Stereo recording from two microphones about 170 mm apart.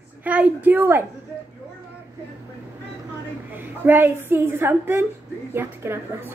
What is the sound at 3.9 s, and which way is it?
A woman's voice, 10° right (ahead or behind).